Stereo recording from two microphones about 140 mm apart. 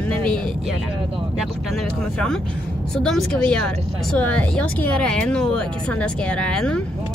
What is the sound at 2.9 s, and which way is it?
Speech, 5° left (ahead or behind).